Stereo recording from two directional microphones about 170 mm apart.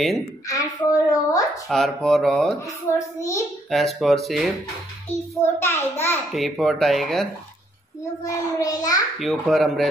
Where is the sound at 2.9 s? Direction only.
20° left (ahead or behind).